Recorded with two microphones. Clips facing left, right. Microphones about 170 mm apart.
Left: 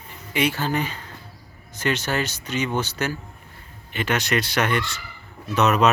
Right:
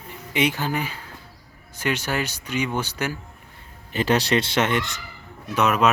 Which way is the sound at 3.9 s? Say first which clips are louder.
Right 3 dB; 35° right (ahead or behind).